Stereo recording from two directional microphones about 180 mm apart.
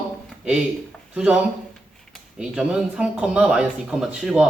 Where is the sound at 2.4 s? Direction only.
5° right (ahead or behind).